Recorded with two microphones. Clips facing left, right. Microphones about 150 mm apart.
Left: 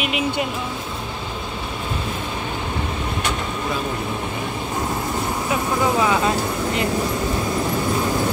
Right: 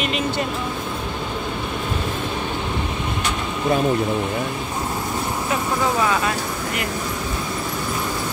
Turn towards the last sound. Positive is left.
turn(degrees=25)  # may be behind; listen again after turning